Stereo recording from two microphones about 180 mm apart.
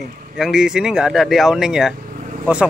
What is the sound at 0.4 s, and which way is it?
Speech, 5° right (ahead or behind).